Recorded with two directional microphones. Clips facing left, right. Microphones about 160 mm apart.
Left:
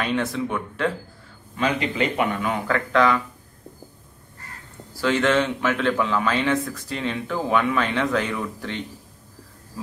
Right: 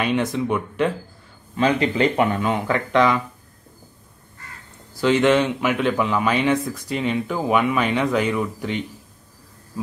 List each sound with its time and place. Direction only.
0.0 s speech: 15° right (ahead or behind)
1.6 s speech: 30° right (ahead or behind)
5.0 s speech: 15° right (ahead or behind)